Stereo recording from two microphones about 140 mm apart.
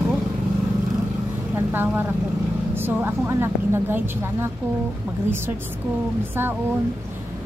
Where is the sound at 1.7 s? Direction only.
15° right (ahead or behind).